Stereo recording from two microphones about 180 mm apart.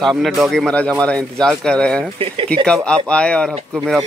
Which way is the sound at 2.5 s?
5° left (ahead or behind).